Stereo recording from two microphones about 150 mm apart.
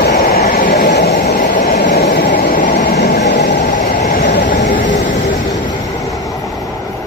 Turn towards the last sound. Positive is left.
turn(degrees=60)  # may be behind; listen again after turning